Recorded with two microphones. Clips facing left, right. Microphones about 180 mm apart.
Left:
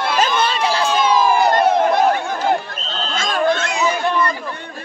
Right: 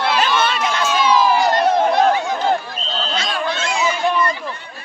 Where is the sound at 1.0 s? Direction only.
50° left (ahead or behind).